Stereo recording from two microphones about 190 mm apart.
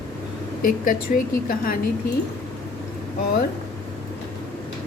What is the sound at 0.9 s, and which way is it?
Speech, 50° left (ahead or behind).